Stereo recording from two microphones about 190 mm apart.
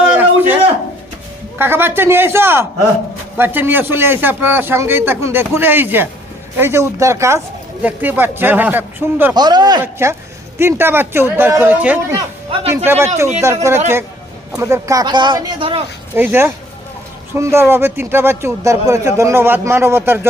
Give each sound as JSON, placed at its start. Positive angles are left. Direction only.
{"t": 0.0, "sound": "a sound", "side_deg": -10}
{"t": 1.5, "sound": "speech", "side_deg": -10}
{"t": 9.3, "sound": "speech", "side_deg": -20}
{"t": 16.1, "sound": "speech", "side_deg": -10}